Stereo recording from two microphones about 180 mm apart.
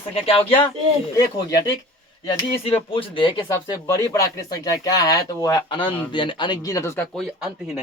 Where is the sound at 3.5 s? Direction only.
15° left (ahead or behind).